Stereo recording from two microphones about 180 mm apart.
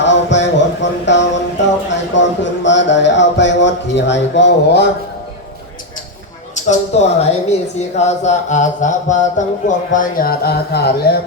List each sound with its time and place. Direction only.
0.0 s music: 80° left
1.9 s a sound: 85° left
6.7 s mantra: 35° left (ahead or behind)
9.6 s speech: 45° left (ahead or behind)